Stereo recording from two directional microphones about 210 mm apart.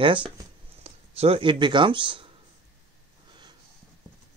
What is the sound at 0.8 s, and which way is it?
Speech, 30° right (ahead or behind).